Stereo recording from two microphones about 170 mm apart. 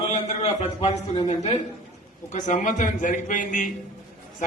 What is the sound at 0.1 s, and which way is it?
A man's voice, 40° left (ahead or behind).